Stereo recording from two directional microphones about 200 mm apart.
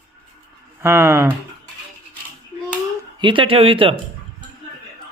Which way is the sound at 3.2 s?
25° right (ahead or behind).